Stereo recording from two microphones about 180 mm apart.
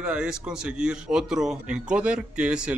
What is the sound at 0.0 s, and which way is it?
A man's voice, 5° right (ahead or behind).